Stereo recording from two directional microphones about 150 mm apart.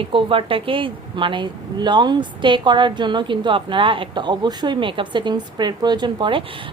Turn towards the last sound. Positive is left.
turn(degrees=-35)  # may be behind; listen again after turning